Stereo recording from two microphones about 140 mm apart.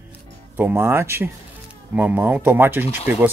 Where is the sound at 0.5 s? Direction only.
15° right (ahead or behind).